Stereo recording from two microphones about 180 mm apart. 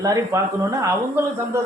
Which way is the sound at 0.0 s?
20° right (ahead or behind).